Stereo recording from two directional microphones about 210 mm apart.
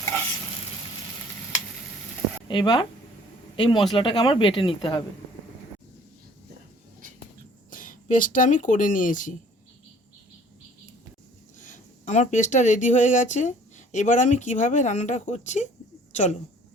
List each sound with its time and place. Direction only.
2.5 s speech: 20° left (ahead or behind)
7.7 s speech: 40° left (ahead or behind)
11.6 s speech: 35° left (ahead or behind)